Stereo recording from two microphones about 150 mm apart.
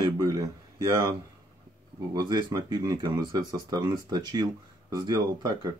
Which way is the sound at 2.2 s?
25° right (ahead or behind).